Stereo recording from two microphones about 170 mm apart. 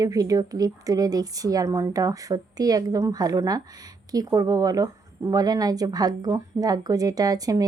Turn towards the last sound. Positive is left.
turn(degrees=-20)  # may be behind; listen again after turning